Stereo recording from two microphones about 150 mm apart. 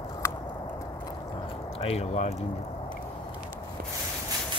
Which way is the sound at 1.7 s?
45° left (ahead or behind).